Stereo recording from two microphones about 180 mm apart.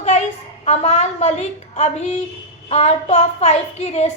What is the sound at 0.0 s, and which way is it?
A woman's voice, 35° left (ahead or behind).